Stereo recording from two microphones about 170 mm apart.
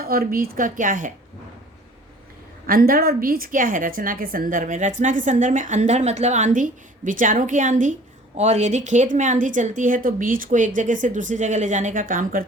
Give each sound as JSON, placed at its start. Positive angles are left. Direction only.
{"t": 0.0, "sound": "a woman's voice", "side_deg": -60}
{"t": 2.6, "sound": "a woman's voice", "side_deg": -60}